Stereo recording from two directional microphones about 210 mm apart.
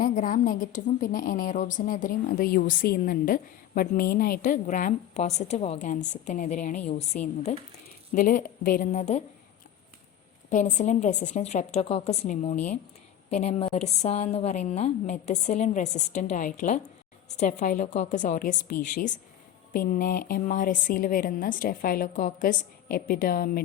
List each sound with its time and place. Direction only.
0.0 s a woman's voice: 40° left (ahead or behind)
10.5 s a woman's voice: 35° left (ahead or behind)